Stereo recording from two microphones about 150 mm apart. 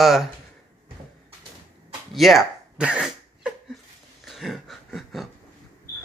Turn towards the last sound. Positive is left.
turn(degrees=0)  # may be behind; listen again after turning